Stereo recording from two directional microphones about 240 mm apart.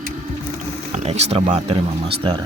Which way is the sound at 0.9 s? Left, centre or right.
Right.